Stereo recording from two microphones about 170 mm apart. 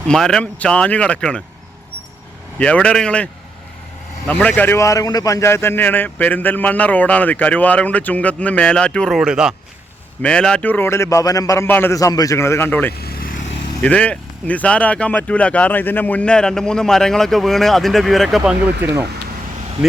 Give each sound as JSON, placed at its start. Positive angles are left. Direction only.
{"t": 0.1, "sound": "speech", "side_deg": 5}
{"t": 2.6, "sound": "speech", "side_deg": 5}
{"t": 4.3, "sound": "speech", "side_deg": 5}
{"t": 13.0, "sound": "vehicle", "side_deg": 65}
{"t": 13.8, "sound": "speech", "side_deg": 5}